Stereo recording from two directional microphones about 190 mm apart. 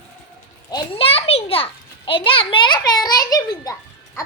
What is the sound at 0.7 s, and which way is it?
A child's voice, 30° left (ahead or behind).